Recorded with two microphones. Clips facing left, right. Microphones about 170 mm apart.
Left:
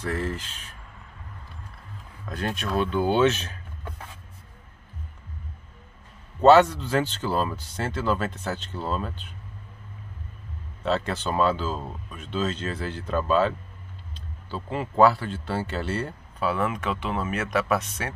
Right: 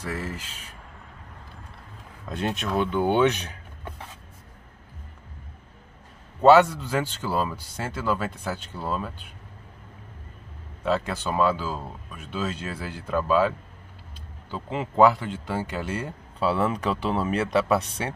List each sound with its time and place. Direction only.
0.0 s speech: 10° right (ahead or behind)
2.2 s speech: 25° right (ahead or behind)
6.4 s speech: 10° right (ahead or behind)
10.8 s speech: 10° right (ahead or behind)
16.3 s speech: 30° right (ahead or behind)